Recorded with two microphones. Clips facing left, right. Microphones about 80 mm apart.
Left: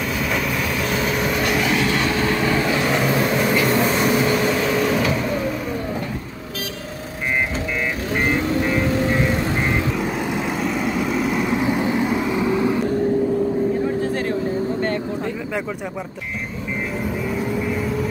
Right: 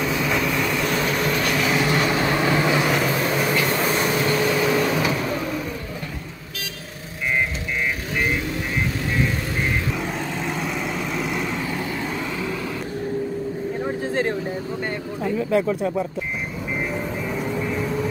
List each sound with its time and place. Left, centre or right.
0.0 s train: centre
1.7 s vehicle: centre
2.8 s vehicle: centre
9.9 s vehicle: centre
11.5 s vehicle: centre
14.0 s vehicle: right
17.3 s vehicle: centre